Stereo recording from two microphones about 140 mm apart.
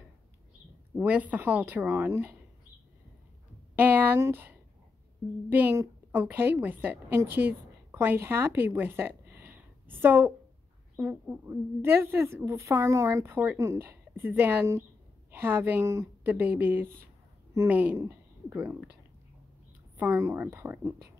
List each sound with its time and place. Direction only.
0.9 s a woman's voice: 10° right (ahead or behind)
3.7 s a woman's voice: 15° right (ahead or behind)
20.0 s a woman's voice: 15° right (ahead or behind)